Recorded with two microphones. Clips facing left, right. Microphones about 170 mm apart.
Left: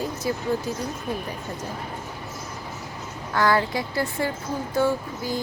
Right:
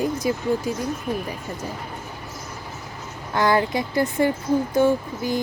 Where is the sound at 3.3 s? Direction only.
20° right (ahead or behind).